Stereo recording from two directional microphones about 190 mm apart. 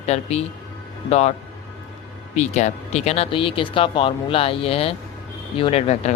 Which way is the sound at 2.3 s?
35° left (ahead or behind).